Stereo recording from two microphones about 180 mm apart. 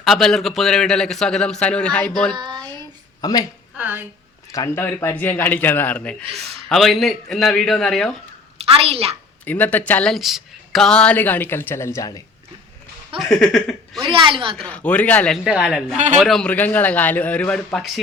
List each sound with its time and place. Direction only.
0.0 s a man's voice: centre (ahead or behind)
2.3 s speech: 25° right (ahead or behind)
3.2 s speech: 20° left (ahead or behind)
3.8 s a woman's voice: 10° right (ahead or behind)
4.5 s a man's voice: 15° left (ahead or behind)
8.5 s a woman's voice: 35° right (ahead or behind)
9.4 s speech: 10° left (ahead or behind)
13.1 s a man's voice: centre (ahead or behind)
14.1 s a woman's voice: 30° right (ahead or behind)
14.5 s speech: 5° left (ahead or behind)
15.4 s a man's voice: 5° right (ahead or behind)